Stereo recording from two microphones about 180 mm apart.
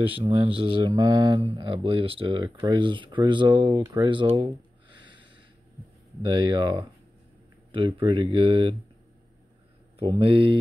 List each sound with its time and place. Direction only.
0.2 s speech: 30° right (ahead or behind)
3.8 s a sound: 20° right (ahead or behind)
6.2 s speech: 25° right (ahead or behind)
9.9 s speech: 30° right (ahead or behind)